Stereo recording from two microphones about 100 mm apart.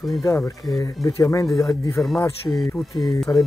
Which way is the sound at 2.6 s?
Centre (ahead or behind).